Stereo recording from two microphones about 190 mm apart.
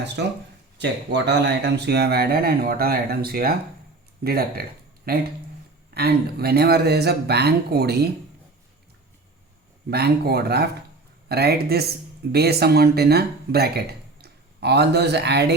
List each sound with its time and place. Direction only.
0.8 s speech: 65° right (ahead or behind)
9.9 s speech: 60° right (ahead or behind)